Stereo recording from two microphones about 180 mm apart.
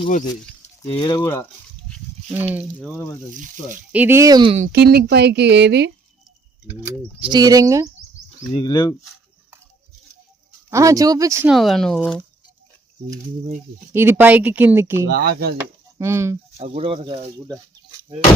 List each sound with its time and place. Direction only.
0.9 s speech: 25° left (ahead or behind)
2.3 s speech: 10° right (ahead or behind)
2.7 s speech: 10° left (ahead or behind)
3.3 s speech: 45° right (ahead or behind)
3.9 s speech: 10° right (ahead or behind)
4.7 s a woman's voice: 60° right (ahead or behind)
7.2 s speech: 25° right (ahead or behind)
8.6 s speech: 20° left (ahead or behind)
10.7 s speech: 15° right (ahead or behind)
11.4 s speech: centre (ahead or behind)
13.9 s speech: 10° right (ahead or behind)
15.0 s speech: 60° right (ahead or behind)
16.0 s speech: 15° right (ahead or behind)
16.6 s speech: 35° right (ahead or behind)